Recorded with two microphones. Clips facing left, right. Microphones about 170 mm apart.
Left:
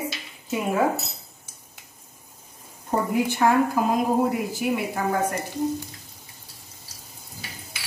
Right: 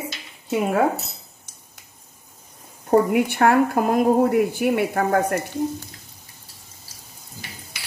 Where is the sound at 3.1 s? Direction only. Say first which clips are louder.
Right 3 dB; 65° right (ahead or behind).